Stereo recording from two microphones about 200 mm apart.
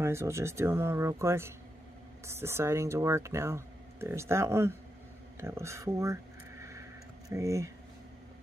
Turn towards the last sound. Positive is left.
turn(degrees=-15)  # may be behind; listen again after turning